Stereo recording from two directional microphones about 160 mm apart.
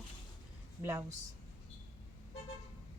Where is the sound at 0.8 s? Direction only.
20° right (ahead or behind).